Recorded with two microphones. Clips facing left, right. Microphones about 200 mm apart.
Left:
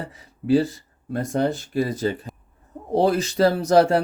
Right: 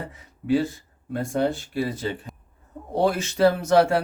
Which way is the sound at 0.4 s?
35° left (ahead or behind).